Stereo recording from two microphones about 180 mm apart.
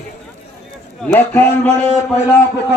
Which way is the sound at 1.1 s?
10° left (ahead or behind).